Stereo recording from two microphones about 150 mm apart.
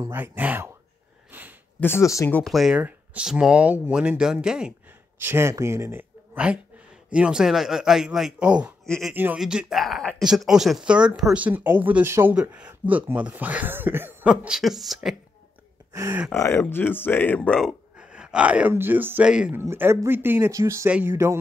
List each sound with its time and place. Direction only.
0.0 s speech: 15° right (ahead or behind)
1.8 s speech: 15° left (ahead or behind)
2.4 s speech: centre (ahead or behind)
5.2 s speech: 15° right (ahead or behind)
8.8 s speech: 5° left (ahead or behind)
9.1 s speech: 10° right (ahead or behind)
15.9 s speech: 20° right (ahead or behind)
16.3 s speech: 15° left (ahead or behind)
17.6 s speech: 5° right (ahead or behind)
19.6 s speech: 15° right (ahead or behind)